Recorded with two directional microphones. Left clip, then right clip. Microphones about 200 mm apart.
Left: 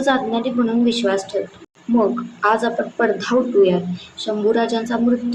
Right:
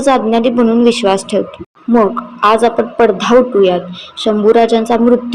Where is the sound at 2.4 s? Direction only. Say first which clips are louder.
Right 8 dB; 35° right (ahead or behind).